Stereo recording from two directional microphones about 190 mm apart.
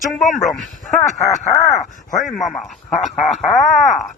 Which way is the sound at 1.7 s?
20° left (ahead or behind).